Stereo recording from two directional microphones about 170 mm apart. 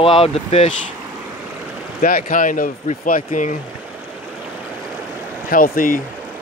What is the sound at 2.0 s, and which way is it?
Speech, 55° left (ahead or behind).